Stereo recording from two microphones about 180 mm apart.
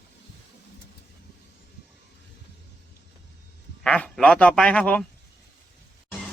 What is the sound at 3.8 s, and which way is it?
Speech, 5° left (ahead or behind).